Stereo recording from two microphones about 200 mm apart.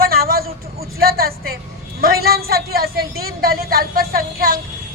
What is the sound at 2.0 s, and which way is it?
Speech, 50° right (ahead or behind).